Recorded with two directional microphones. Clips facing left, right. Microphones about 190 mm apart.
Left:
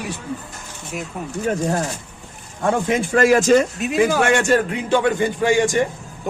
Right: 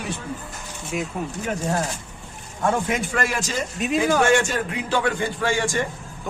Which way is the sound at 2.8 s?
40° left (ahead or behind).